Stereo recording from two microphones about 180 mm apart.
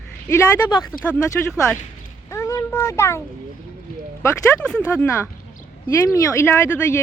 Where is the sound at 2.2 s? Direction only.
15° left (ahead or behind).